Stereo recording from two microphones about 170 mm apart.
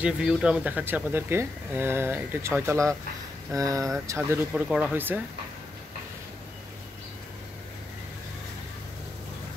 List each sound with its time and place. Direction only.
0.0 s speech: 5° right (ahead or behind)
4.6 s speech: centre (ahead or behind)